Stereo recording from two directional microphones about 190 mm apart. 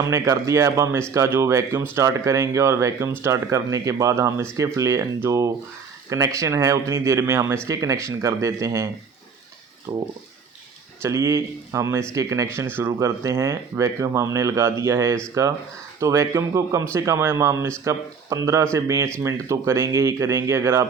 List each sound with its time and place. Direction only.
0.1 s speech: 15° right (ahead or behind)
9.9 s speech: 20° right (ahead or behind)